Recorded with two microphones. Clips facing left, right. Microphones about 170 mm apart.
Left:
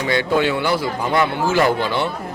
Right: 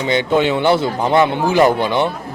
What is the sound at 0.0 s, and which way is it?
Speech, 20° right (ahead or behind).